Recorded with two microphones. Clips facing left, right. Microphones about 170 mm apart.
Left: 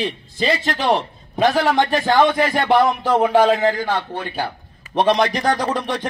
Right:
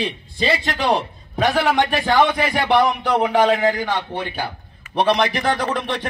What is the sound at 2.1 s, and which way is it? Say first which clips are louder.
A man's voice: left 1 dB; 10° right (ahead or behind).